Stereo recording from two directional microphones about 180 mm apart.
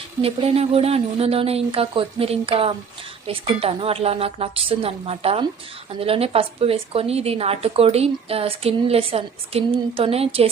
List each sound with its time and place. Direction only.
0.2 s a woman's voice: 35° right (ahead or behind)